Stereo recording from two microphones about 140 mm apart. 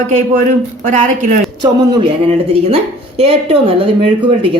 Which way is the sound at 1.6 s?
35° right (ahead or behind).